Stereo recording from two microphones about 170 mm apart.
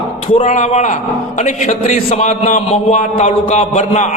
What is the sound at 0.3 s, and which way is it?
A man's voice, 45° left (ahead or behind).